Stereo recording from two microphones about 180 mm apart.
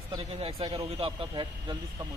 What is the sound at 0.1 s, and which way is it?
A man's voice, 30° right (ahead or behind).